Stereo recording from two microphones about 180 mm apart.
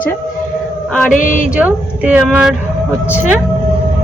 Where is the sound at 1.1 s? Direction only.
45° left (ahead or behind).